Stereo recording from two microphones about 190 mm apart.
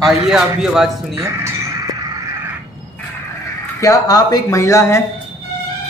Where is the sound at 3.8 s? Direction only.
20° left (ahead or behind).